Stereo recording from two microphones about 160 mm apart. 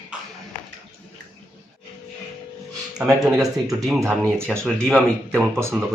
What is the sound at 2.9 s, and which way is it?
Speech, 5° right (ahead or behind).